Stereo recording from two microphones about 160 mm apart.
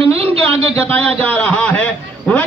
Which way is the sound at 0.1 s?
40° right (ahead or behind).